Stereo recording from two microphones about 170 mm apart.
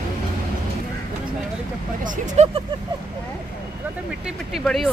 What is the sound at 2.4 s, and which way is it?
Speech, 40° right (ahead or behind).